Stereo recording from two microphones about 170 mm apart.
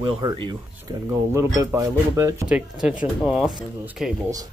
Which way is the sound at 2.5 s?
5° right (ahead or behind).